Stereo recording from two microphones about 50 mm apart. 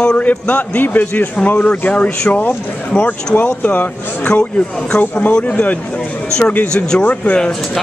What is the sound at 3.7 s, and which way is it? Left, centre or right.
Speech, left.